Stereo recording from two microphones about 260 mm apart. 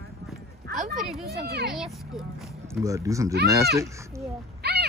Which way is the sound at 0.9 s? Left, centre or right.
Centre.